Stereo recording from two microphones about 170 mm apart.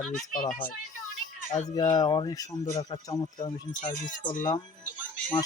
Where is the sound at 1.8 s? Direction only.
25° left (ahead or behind).